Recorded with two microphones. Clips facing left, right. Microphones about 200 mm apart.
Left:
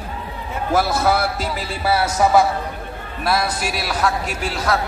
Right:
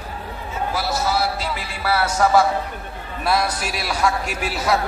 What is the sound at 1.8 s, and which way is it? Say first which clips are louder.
Speech: left 1 dB; 25° left (ahead or behind).